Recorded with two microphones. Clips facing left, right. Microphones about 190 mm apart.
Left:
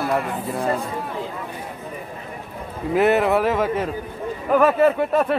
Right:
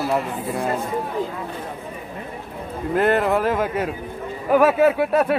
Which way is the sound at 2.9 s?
5° left (ahead or behind).